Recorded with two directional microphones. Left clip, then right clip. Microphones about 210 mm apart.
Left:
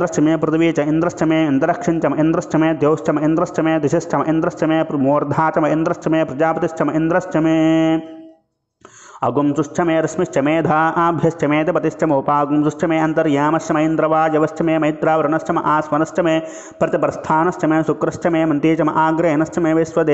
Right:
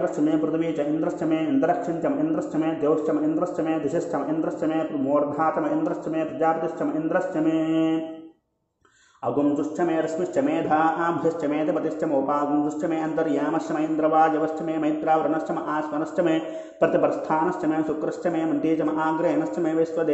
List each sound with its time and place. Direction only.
0.0 s a man's voice: 35° left (ahead or behind)
9.2 s a man's voice: 35° left (ahead or behind)